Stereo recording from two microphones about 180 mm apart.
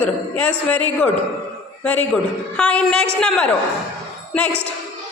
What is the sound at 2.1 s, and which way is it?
A woman's voice, 5° left (ahead or behind).